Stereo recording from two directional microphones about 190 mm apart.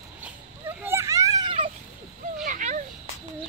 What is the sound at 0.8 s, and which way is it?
Children playing, 15° right (ahead or behind).